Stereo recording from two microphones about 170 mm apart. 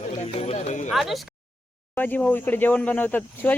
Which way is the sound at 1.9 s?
10° left (ahead or behind).